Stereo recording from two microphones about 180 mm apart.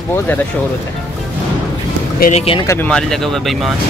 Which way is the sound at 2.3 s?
35° left (ahead or behind).